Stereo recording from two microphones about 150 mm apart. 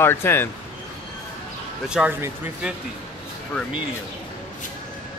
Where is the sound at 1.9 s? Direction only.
5° right (ahead or behind).